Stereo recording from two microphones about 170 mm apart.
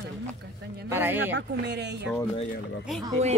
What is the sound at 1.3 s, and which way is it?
Speech, 80° right.